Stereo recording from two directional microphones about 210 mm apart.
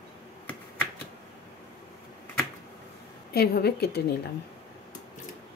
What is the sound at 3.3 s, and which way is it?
Speech, 50° left (ahead or behind).